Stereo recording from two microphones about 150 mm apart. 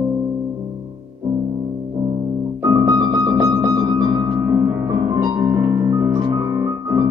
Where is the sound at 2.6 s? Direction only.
25° right (ahead or behind).